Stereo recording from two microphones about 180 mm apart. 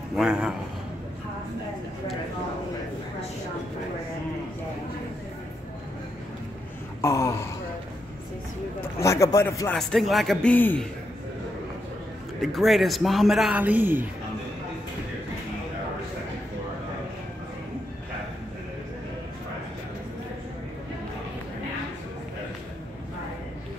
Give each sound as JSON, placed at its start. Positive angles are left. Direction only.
{"t": 0.1, "sound": "a man's voice", "side_deg": -5}
{"t": 7.0, "sound": "wail", "side_deg": 15}
{"t": 9.0, "sound": "a man's voice", "side_deg": 15}
{"t": 9.8, "sound": "a man's voice", "side_deg": 0}
{"t": 12.4, "sound": "a man's voice", "side_deg": 0}